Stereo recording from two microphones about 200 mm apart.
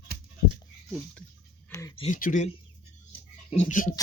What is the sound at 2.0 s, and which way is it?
Speech, 40° left (ahead or behind).